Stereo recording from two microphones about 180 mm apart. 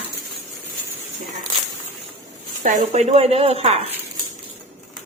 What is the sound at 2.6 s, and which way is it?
Speech, 40° right (ahead or behind).